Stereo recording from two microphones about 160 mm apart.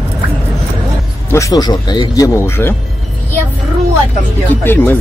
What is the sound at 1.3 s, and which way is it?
Speech, 20° left (ahead or behind).